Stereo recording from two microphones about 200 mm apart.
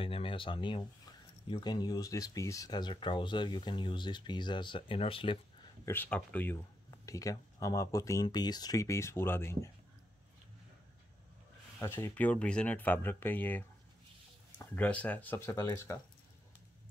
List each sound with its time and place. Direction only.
0.0 s speech: 25° left (ahead or behind)
5.9 s speech: 10° left (ahead or behind)
11.8 s speech: 10° left (ahead or behind)